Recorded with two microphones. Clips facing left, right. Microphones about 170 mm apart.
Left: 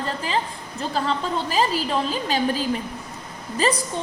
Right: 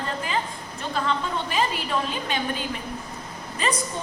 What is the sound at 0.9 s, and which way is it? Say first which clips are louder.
A woman's voice: left 2 dB; 35° left (ahead or behind).